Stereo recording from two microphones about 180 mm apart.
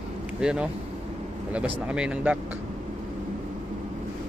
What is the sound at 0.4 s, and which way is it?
Speech, 5° right (ahead or behind).